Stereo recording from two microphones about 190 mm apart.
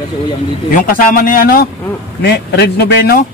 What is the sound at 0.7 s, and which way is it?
Speech, 45° left (ahead or behind).